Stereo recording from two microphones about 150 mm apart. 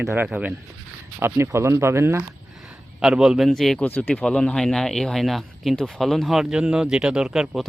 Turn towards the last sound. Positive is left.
turn(degrees=0)  # may be behind; listen again after turning